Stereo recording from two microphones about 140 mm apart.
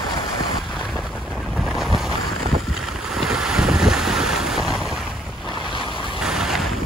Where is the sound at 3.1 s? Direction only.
5° right (ahead or behind).